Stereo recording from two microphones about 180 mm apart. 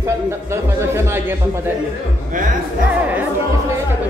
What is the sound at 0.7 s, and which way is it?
Speech, 15° right (ahead or behind).